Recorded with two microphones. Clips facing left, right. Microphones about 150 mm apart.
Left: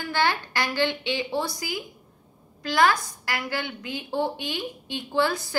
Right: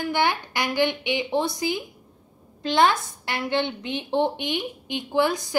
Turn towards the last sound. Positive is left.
turn(degrees=-20)  # may be behind; listen again after turning